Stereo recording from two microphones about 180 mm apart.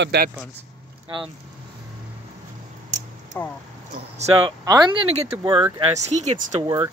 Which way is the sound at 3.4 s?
15° left (ahead or behind).